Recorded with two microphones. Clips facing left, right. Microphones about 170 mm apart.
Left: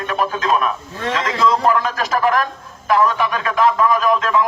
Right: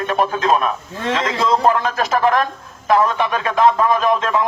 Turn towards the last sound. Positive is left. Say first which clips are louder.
# even
turn(degrees=-25)  # may be behind; listen again after turning